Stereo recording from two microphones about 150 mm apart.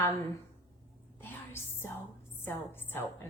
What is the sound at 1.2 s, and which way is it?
Music, 15° left (ahead or behind).